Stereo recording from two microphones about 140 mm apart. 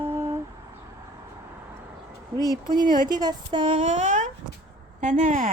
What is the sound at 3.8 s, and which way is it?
Speech, 60° right (ahead or behind).